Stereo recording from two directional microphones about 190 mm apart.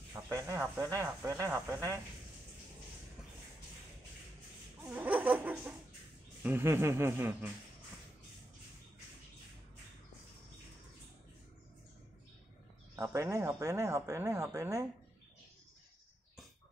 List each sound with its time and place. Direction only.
0.3 s speech: 15° right (ahead or behind)
4.8 s chuckle: 10° right (ahead or behind)
6.4 s speech: 10° right (ahead or behind)
12.9 s speech: 15° right (ahead or behind)